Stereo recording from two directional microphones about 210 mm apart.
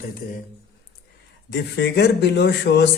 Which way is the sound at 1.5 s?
55° left (ahead or behind).